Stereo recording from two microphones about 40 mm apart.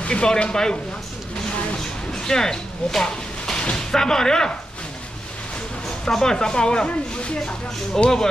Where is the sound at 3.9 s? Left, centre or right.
Centre.